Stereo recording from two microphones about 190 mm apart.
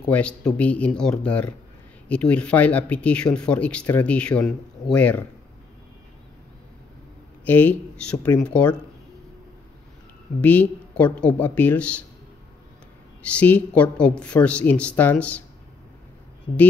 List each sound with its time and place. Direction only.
0.0 s speech: 5° left (ahead or behind)
7.4 s speech: 10° left (ahead or behind)
10.4 s speech: 10° left (ahead or behind)
13.2 s speech: 5° left (ahead or behind)